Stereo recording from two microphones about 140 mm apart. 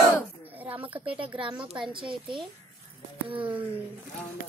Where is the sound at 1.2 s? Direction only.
35° right (ahead or behind).